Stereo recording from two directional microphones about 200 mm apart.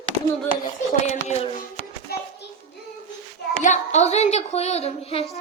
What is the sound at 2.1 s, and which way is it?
Hands, 50° left (ahead or behind).